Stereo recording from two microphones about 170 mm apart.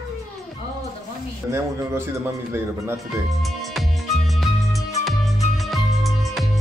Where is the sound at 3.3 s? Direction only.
Centre (ahead or behind).